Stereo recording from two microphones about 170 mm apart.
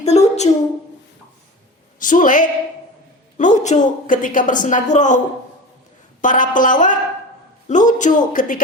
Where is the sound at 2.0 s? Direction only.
50° left (ahead or behind).